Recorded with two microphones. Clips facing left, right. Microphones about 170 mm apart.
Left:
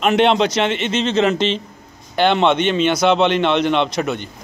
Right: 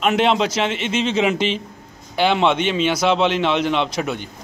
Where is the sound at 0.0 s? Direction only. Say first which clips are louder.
Left 3 dB; centre (ahead or behind).